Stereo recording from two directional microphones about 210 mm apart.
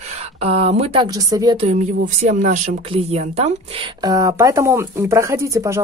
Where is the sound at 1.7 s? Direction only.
35° right (ahead or behind).